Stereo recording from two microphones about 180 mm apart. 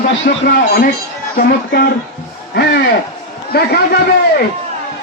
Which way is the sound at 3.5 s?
65° left (ahead or behind).